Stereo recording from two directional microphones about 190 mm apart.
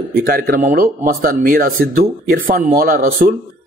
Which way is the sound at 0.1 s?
50° right (ahead or behind).